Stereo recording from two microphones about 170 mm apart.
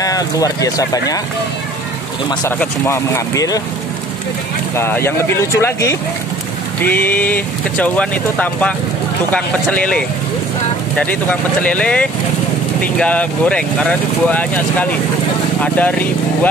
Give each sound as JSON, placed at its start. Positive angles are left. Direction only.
{"t": 0.0, "sound": "speech", "side_deg": 20}
{"t": 2.6, "sound": "speech", "side_deg": 15}
{"t": 4.7, "sound": "speech", "side_deg": 15}